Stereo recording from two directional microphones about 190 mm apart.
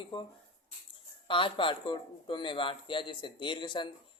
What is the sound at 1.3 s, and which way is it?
Speech, 25° left (ahead or behind).